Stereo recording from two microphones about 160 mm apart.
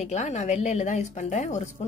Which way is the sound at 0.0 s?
45° left (ahead or behind).